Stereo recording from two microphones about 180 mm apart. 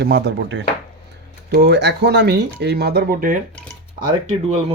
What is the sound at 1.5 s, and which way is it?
Speech, 65° right (ahead or behind).